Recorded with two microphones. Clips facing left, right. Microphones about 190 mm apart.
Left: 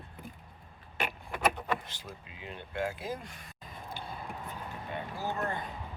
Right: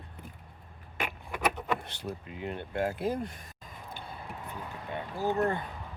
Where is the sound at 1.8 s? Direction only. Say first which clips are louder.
Right 8 dB; 65° right (ahead or behind).